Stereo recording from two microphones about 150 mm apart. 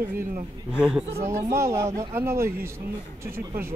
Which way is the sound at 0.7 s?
5° right (ahead or behind).